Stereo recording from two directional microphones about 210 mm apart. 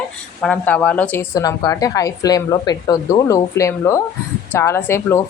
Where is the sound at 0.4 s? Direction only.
10° left (ahead or behind).